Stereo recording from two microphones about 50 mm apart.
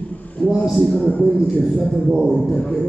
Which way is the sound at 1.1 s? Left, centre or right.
Left.